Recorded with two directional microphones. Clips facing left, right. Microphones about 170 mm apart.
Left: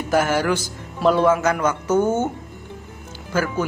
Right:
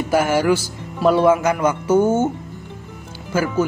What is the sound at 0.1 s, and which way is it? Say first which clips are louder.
A man's voice: right 2 dB; 10° right (ahead or behind).